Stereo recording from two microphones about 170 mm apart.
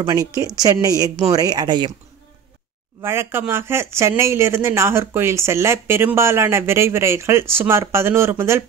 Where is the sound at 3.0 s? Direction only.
15° right (ahead or behind).